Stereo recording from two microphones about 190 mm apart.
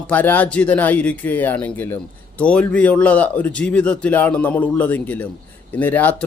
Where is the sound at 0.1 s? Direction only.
10° left (ahead or behind).